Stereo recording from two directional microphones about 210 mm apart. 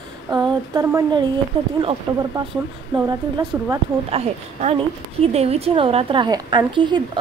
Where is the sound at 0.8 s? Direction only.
10° right (ahead or behind).